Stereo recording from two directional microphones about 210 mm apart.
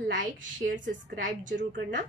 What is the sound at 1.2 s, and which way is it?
Speech, 40° right (ahead or behind).